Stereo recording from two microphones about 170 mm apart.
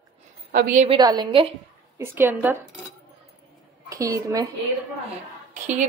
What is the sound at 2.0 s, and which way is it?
Speech, 15° right (ahead or behind).